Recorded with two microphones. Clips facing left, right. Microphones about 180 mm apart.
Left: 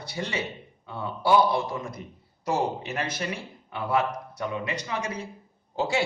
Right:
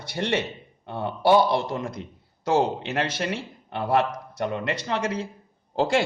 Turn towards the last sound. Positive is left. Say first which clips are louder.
# right 4 dB
turn(degrees=-90)